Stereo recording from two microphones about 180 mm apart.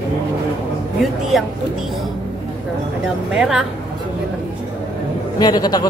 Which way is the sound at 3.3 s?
5° right (ahead or behind).